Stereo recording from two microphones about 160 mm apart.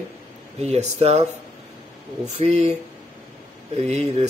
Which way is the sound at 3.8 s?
40° right (ahead or behind).